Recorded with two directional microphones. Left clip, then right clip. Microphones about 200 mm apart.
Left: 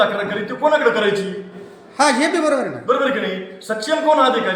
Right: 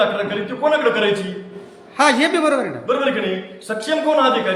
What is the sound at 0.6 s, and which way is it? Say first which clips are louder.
A man's voice: left 1 dB; centre (ahead or behind).